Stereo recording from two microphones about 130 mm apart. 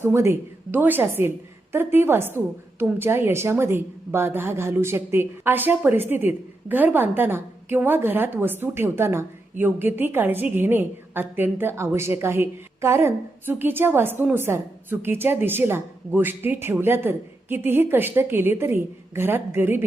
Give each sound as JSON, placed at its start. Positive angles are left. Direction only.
{"t": 0.0, "sound": "a woman's voice", "side_deg": -20}